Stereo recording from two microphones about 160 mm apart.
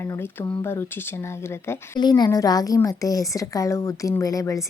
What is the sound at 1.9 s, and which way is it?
A woman's voice, 25° left (ahead or behind).